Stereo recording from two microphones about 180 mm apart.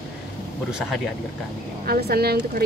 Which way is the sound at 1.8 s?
55° right (ahead or behind).